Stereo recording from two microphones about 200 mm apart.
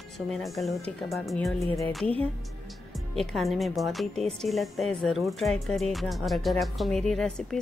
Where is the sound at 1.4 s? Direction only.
15° left (ahead or behind).